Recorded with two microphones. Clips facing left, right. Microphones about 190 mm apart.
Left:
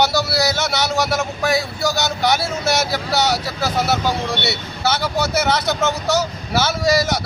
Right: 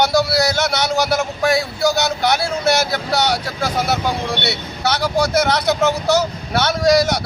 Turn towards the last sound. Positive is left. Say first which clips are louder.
# right 3 dB
turn(degrees=0)  # may be behind; listen again after turning